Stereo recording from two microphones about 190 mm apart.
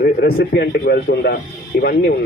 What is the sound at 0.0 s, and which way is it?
A man's voice, 55° left (ahead or behind).